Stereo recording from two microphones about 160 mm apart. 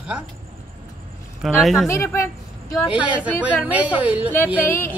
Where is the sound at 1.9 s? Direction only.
15° left (ahead or behind).